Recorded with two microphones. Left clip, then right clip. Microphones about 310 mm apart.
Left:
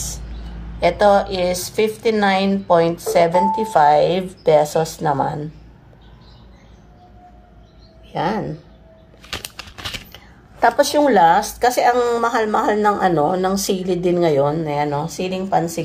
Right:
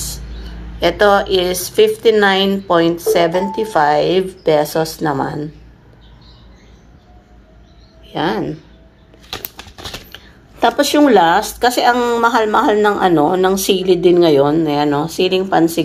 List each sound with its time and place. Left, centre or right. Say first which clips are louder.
0.7 s a woman's voice: right 2 dB; centre
8.1 s speech: right 3 dB; centre
10.1 s speech: right 4 dB; centre